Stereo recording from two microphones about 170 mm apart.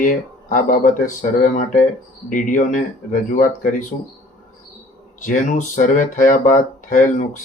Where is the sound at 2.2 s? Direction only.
50° left (ahead or behind).